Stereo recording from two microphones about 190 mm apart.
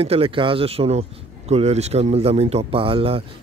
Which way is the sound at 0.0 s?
30° right (ahead or behind).